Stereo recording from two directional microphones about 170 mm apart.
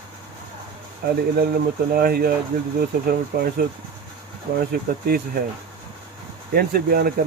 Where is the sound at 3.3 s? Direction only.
70° right (ahead or behind).